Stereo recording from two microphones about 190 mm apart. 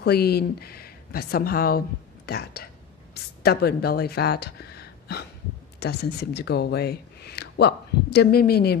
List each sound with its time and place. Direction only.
0.0 s speech: 55° left (ahead or behind)